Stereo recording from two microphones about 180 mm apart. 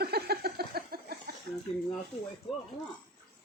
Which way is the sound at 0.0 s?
60° right (ahead or behind).